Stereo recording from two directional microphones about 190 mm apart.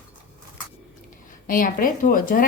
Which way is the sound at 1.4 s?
50° left (ahead or behind).